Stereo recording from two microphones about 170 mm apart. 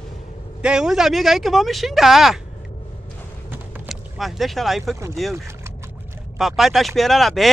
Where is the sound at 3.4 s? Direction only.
10° right (ahead or behind).